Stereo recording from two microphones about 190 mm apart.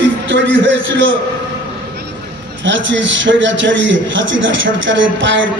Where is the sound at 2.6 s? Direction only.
75° right (ahead or behind).